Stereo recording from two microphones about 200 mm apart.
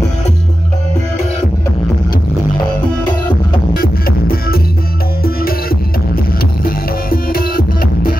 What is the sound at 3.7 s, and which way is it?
Music, 50° left (ahead or behind).